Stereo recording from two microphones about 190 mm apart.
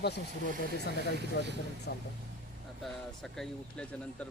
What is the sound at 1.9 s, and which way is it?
Speech, 60° left (ahead or behind).